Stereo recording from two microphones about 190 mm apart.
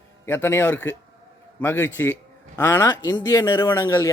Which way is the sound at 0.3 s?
10° left (ahead or behind).